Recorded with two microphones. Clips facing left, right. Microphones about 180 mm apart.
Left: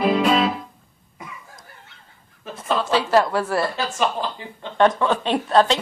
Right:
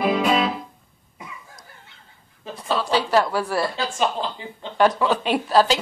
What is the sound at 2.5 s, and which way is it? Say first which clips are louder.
A woman's voice: left 1 dB; centre (ahead or behind).